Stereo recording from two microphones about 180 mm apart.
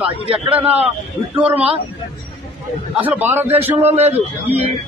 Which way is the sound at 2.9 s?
10° right (ahead or behind).